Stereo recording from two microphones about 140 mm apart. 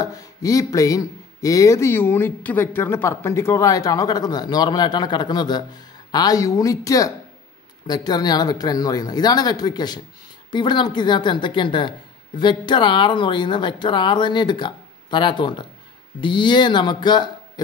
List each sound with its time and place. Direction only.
0.0 s speech: 25° left (ahead or behind)